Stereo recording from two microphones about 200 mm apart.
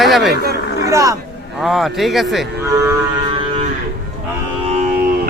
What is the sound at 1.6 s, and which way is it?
Speech, centre (ahead or behind).